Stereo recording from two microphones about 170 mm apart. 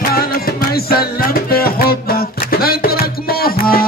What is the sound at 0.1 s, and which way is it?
Music, 60° left (ahead or behind).